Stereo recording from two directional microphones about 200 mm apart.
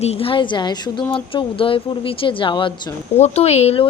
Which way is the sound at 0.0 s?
30° left (ahead or behind).